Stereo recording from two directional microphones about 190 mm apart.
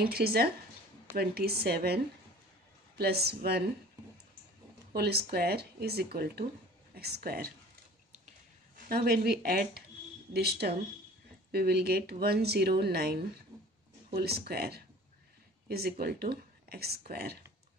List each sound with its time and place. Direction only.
0.0 s speech: 55° right (ahead or behind)
3.0 s speech: 55° right (ahead or behind)
4.9 s speech: 55° right (ahead or behind)
8.7 s speech: 50° right (ahead or behind)
13.5 s a sound: 15° right (ahead or behind)
14.1 s speech: 55° right (ahead or behind)